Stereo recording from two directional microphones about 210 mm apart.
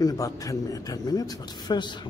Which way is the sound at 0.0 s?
15° left (ahead or behind).